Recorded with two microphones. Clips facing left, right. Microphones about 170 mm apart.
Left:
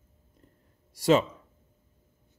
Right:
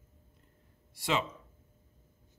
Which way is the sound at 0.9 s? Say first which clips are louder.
Left 10 dB; 40° left (ahead or behind).